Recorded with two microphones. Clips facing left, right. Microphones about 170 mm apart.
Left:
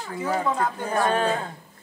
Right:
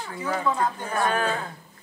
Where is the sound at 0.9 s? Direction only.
30° left (ahead or behind).